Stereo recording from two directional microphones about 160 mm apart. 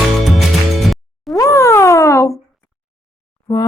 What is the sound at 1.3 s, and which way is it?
Cat, 20° left (ahead or behind).